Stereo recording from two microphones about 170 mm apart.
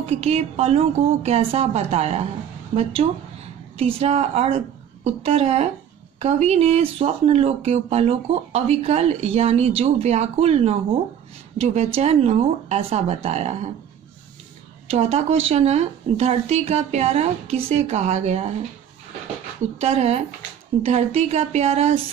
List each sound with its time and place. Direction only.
0.0 s speech: 40° right (ahead or behind)
14.9 s speech: 40° right (ahead or behind)
19.8 s speech: 35° right (ahead or behind)